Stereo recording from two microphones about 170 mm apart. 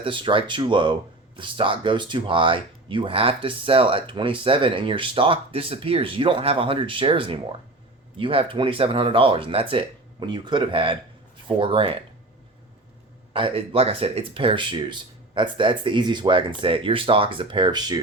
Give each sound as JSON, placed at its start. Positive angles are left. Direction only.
{"t": 0.0, "sound": "speech", "side_deg": -30}
{"t": 13.3, "sound": "speech", "side_deg": -30}